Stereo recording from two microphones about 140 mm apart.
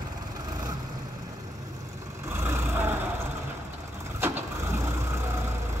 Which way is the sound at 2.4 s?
15° right (ahead or behind).